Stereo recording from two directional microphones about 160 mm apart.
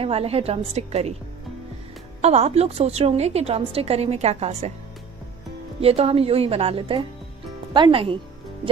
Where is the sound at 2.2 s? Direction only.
45° right (ahead or behind).